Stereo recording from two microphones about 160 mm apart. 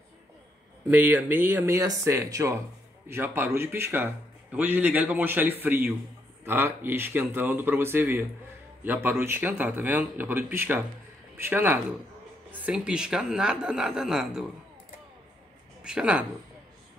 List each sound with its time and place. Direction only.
0.8 s a man's voice: 10° right (ahead or behind)
15.8 s speech: 5° right (ahead or behind)